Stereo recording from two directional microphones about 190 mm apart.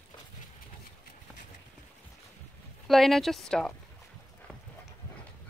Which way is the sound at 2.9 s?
Centre (ahead or behind).